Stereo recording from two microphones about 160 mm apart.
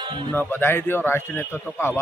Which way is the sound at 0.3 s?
15° left (ahead or behind).